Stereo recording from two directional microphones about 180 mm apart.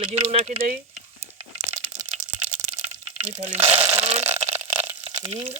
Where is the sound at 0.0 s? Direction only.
35° right (ahead or behind).